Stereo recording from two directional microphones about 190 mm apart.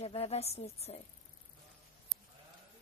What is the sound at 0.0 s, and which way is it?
A woman's voice, 30° left (ahead or behind).